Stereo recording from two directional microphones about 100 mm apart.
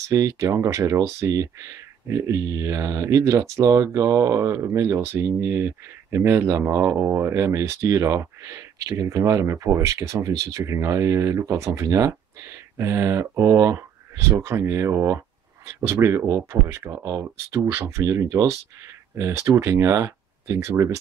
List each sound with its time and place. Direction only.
0.1 s speech: 35° right (ahead or behind)